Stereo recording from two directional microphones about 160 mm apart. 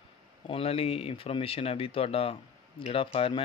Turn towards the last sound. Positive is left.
turn(degrees=35)  # may be behind; listen again after turning